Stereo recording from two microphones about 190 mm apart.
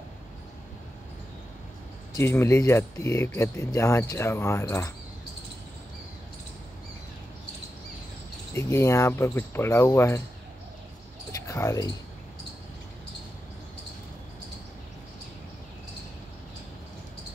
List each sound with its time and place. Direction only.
2.1 s speech: 15° left (ahead or behind)
8.5 s speech: 15° left (ahead or behind)
11.4 s speech: 15° left (ahead or behind)